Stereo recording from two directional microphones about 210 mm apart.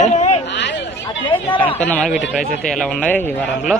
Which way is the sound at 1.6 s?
5° left (ahead or behind).